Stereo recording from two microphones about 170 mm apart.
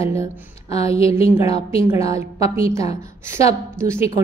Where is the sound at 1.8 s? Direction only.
15° right (ahead or behind).